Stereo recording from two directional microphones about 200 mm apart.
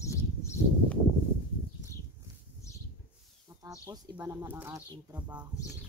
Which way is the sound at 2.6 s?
15° left (ahead or behind).